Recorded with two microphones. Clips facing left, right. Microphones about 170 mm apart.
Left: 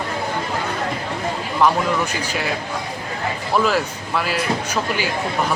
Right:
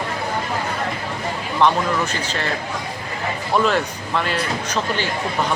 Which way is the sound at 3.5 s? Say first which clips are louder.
Even; 5° left (ahead or behind).